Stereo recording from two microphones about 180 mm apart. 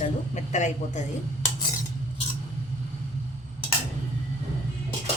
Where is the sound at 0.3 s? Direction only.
40° left (ahead or behind).